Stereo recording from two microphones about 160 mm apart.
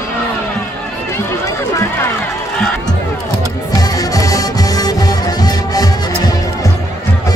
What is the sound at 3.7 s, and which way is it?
Music, 25° left (ahead or behind).